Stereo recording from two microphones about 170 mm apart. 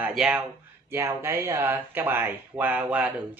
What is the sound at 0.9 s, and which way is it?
A man's voice, 15° right (ahead or behind).